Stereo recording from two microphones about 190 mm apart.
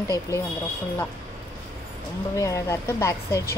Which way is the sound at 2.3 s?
15° left (ahead or behind).